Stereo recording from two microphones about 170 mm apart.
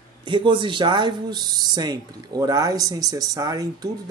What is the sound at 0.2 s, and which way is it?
Speech, 30° right (ahead or behind).